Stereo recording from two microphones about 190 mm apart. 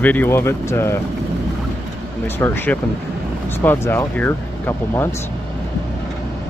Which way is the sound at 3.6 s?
10° left (ahead or behind).